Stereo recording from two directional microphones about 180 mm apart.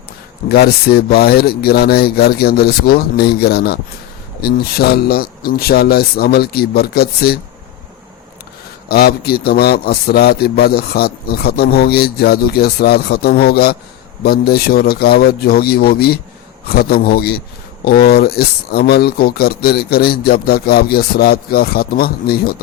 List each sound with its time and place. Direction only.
0.4 s a man's voice: 65° left (ahead or behind)
8.9 s a man's voice: 60° left (ahead or behind)